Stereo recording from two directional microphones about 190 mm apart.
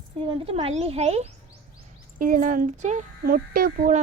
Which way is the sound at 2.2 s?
45° right (ahead or behind).